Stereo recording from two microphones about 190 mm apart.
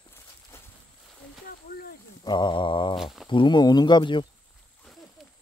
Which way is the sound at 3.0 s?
Centre (ahead or behind).